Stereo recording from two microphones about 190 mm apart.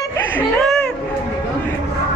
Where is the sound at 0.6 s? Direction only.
Centre (ahead or behind).